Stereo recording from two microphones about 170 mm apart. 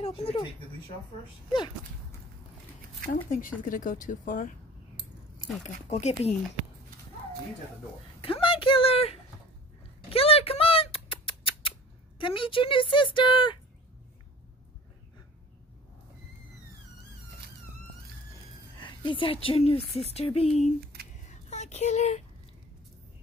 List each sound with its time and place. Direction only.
0.0 s speech: 35° left (ahead or behind)
3.3 s speech: 55° left (ahead or behind)
5.6 s a woman's voice: 40° left (ahead or behind)
8.2 s a sound: 30° left (ahead or behind)
10.1 s rodents: 35° left (ahead or behind)
12.2 s speech: 30° left (ahead or behind)
18.8 s a woman's voice: 30° left (ahead or behind)
21.3 s a sound: 40° left (ahead or behind)